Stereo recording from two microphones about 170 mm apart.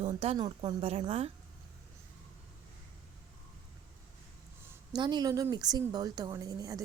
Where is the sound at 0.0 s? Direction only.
35° right (ahead or behind).